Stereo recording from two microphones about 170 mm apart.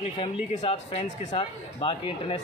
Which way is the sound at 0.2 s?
35° left (ahead or behind).